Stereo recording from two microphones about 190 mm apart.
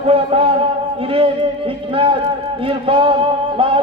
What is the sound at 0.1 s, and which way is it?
Speech, 30° right (ahead or behind).